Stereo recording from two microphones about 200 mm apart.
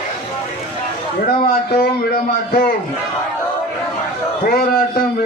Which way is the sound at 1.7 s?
45° left (ahead or behind).